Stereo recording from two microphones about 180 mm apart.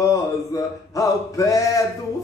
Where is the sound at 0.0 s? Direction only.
15° left (ahead or behind).